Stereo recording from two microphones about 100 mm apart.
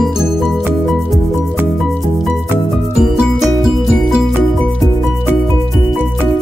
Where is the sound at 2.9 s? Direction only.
5° right (ahead or behind).